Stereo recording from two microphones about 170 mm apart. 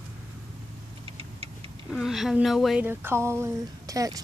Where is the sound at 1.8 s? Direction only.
Centre (ahead or behind).